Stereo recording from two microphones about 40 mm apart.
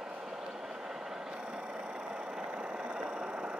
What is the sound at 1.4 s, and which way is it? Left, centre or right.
Vehicle, right.